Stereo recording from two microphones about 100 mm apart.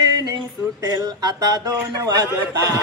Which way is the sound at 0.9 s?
40° right (ahead or behind).